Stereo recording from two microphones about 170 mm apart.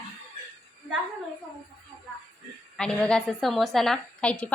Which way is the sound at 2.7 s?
5° left (ahead or behind).